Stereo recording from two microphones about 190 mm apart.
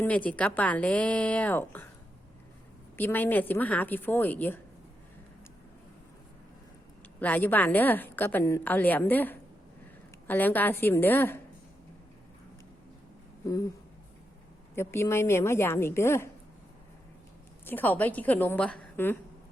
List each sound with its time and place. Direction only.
0.0 s a woman's voice: 10° left (ahead or behind)
2.9 s a woman's voice: 10° left (ahead or behind)
7.2 s a woman's voice: 10° left (ahead or behind)
13.4 s a sound: 15° left (ahead or behind)
14.8 s a woman's voice: 15° left (ahead or behind)
17.7 s a woman's voice: 10° left (ahead or behind)